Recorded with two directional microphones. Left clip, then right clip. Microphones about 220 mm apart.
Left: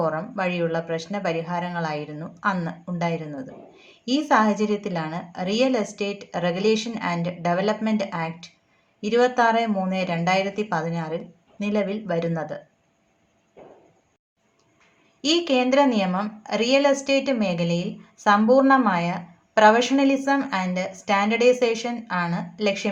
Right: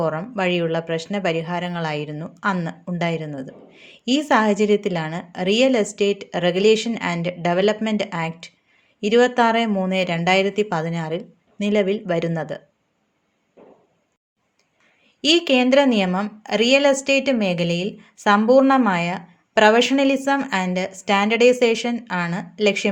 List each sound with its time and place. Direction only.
0.0 s speech: 40° right (ahead or behind)
15.2 s a woman's voice: 45° right (ahead or behind)